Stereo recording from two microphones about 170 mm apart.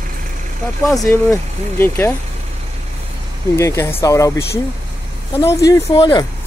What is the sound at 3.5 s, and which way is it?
Speech, 15° left (ahead or behind).